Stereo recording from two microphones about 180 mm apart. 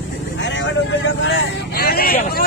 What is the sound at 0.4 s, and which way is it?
Vehicle, 90° left.